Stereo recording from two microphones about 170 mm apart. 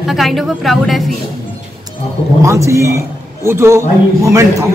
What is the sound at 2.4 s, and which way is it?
A man's voice, 15° right (ahead or behind).